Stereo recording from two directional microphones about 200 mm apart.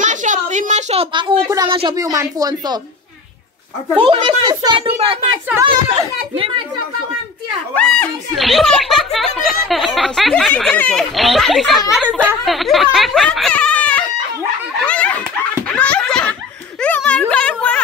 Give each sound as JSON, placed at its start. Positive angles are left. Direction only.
{"t": 0.0, "sound": "a woman's voice", "side_deg": -40}
{"t": 4.0, "sound": "speech", "side_deg": -30}
{"t": 7.7, "sound": "speech", "side_deg": 5}
{"t": 14.9, "sound": "snicker", "side_deg": 5}
{"t": 15.7, "sound": "giggle", "side_deg": 5}
{"t": 16.8, "sound": "music", "side_deg": 5}